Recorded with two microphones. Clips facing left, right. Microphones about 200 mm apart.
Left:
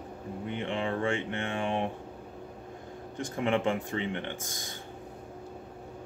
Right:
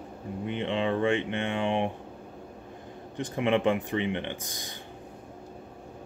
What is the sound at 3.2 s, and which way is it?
Speech, 20° right (ahead or behind).